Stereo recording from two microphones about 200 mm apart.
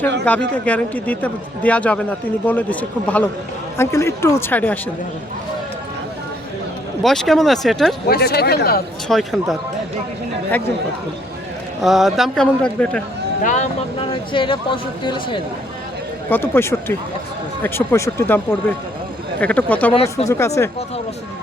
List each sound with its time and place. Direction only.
0.3 s a man's voice: 5° left (ahead or behind)
7.0 s a man's voice: centre (ahead or behind)
8.0 s speech: 50° left (ahead or behind)
9.0 s a man's voice: centre (ahead or behind)
11.8 s a man's voice: centre (ahead or behind)
13.4 s speech: 40° left (ahead or behind)
14.0 s speech: 25° left (ahead or behind)
16.3 s a man's voice: 10° left (ahead or behind)
19.4 s a man's voice: 5° left (ahead or behind)
19.9 s speech: 30° left (ahead or behind)
20.2 s a man's voice: 15° left (ahead or behind)